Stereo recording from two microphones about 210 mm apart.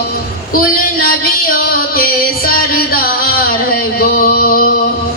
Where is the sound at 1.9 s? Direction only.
45° left (ahead or behind).